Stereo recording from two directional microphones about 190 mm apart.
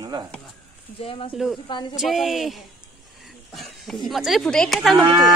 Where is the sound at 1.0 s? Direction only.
30° left (ahead or behind).